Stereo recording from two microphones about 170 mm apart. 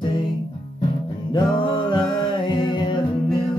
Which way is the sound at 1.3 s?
25° left (ahead or behind).